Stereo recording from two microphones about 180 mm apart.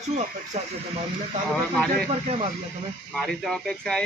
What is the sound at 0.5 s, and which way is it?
Speech, 40° right (ahead or behind).